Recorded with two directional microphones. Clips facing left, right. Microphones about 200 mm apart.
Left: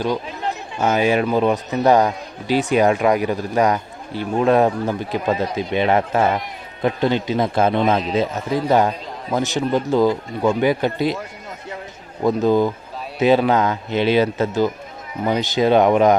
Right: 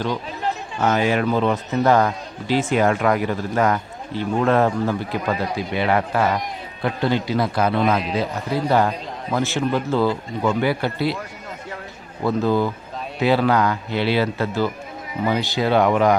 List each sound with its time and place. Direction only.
0.8 s a man's voice: 15° left (ahead or behind)
12.2 s a man's voice: 15° left (ahead or behind)